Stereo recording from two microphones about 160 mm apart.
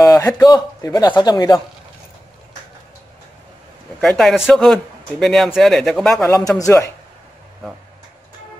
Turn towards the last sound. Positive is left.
turn(degrees=20)  # may be behind; listen again after turning